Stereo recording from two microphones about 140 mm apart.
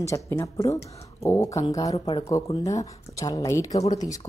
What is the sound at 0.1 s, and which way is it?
A woman's voice, 20° left (ahead or behind).